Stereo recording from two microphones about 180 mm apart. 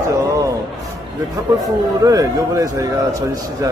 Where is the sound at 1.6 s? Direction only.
20° right (ahead or behind).